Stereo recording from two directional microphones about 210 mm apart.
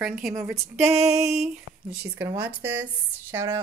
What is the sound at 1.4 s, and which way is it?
Speech, 5° right (ahead or behind).